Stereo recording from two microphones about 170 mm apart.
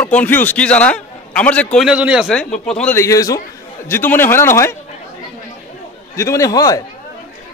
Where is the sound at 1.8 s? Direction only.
5° right (ahead or behind).